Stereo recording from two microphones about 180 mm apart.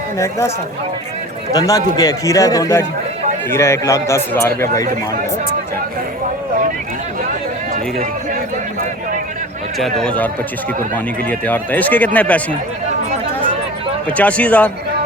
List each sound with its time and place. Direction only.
0.2 s speech: 15° left (ahead or behind)
1.5 s a man's voice: 20° left (ahead or behind)
10.0 s speech: 5° left (ahead or behind)
14.1 s speech: 10° left (ahead or behind)